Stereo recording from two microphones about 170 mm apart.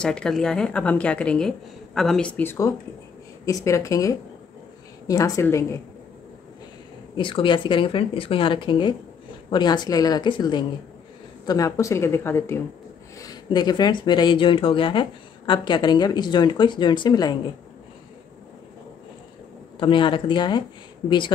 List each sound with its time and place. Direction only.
0.0 s a woman's voice: 5° left (ahead or behind)
7.2 s speech: 30° left (ahead or behind)
19.8 s speech: 30° left (ahead or behind)